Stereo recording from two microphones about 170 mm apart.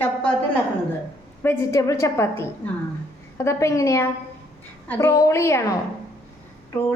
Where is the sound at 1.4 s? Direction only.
15° left (ahead or behind).